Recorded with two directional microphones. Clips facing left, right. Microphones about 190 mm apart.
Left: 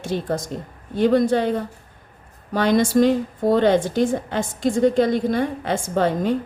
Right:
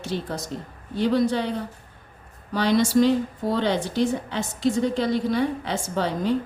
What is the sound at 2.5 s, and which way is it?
A woman's voice, 50° left (ahead or behind).